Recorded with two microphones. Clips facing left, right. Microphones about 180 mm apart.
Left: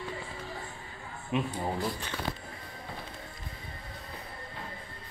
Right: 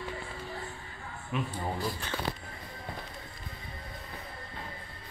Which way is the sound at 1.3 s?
20° left (ahead or behind).